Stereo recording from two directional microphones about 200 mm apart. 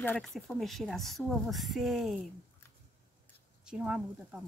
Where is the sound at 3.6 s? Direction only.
5° right (ahead or behind).